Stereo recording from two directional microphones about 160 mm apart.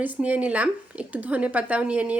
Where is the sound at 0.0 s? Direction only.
10° right (ahead or behind).